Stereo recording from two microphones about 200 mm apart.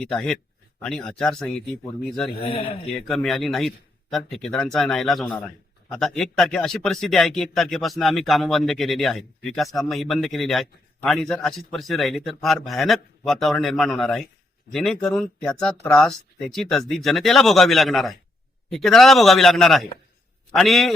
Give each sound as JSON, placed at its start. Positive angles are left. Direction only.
{"t": 0.0, "sound": "speech", "side_deg": 5}
{"t": 2.4, "sound": "speech", "side_deg": 30}
{"t": 3.1, "sound": "speech", "side_deg": 0}